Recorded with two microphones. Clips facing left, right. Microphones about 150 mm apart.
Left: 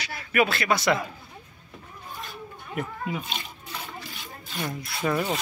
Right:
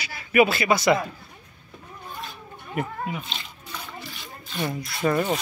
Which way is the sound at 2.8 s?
Centre (ahead or behind).